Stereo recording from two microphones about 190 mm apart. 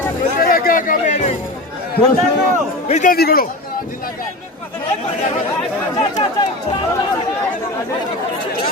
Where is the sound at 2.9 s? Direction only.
45° left (ahead or behind).